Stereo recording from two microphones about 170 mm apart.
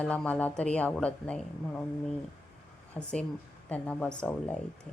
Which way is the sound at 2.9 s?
5° left (ahead or behind).